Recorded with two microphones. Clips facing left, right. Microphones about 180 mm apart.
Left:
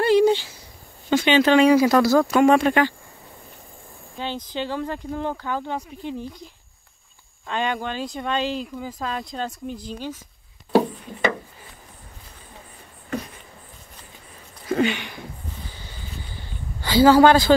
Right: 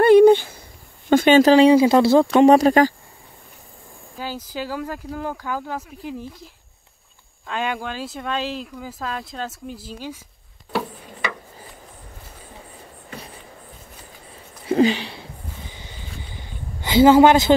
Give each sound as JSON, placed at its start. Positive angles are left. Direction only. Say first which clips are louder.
{"t": 0.0, "sound": "a sound", "louder": "right 6 dB", "side_deg": -55}
{"t": 1.1, "sound": "speech", "louder": "right 4 dB", "side_deg": -45}
{"t": 4.2, "sound": "speech", "louder": "left 1 dB", "side_deg": -5}
{"t": 14.7, "sound": "speech", "louder": "right 4 dB", "side_deg": -35}
{"t": 16.8, "sound": "a man's voice", "louder": "right 2 dB", "side_deg": -20}